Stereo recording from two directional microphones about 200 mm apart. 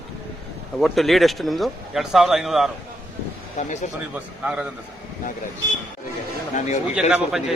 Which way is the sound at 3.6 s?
35° left (ahead or behind).